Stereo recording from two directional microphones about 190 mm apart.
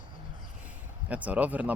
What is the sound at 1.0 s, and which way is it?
Speech, 5° right (ahead or behind).